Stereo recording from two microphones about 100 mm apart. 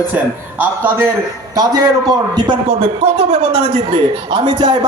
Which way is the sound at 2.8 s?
90° right.